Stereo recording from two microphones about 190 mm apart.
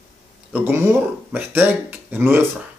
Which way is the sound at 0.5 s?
10° right (ahead or behind).